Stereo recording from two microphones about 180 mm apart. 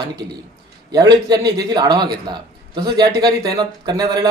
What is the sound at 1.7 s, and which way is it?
Speech, 20° right (ahead or behind).